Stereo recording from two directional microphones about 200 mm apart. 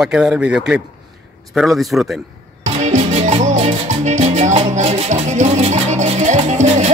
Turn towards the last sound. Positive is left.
turn(degrees=-35)  # may be behind; listen again after turning